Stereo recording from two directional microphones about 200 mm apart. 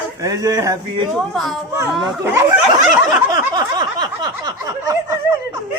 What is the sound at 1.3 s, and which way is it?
Speech, centre (ahead or behind).